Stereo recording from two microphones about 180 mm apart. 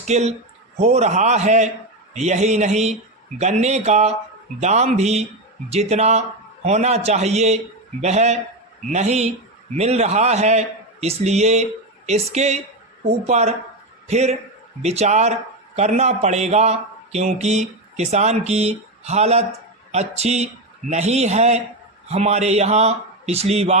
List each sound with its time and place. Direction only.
0.1 s speech: 40° right (ahead or behind)